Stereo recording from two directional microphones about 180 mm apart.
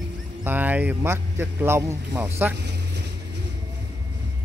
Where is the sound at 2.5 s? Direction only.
70° right (ahead or behind).